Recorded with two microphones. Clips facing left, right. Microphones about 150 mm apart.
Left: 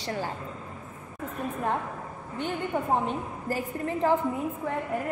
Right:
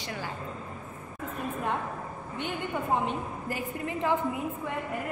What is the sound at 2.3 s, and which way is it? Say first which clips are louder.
A woman's voice: left 3 dB; 40° left (ahead or behind).